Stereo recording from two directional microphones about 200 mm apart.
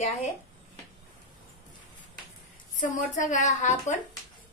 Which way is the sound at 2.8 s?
40° left (ahead or behind).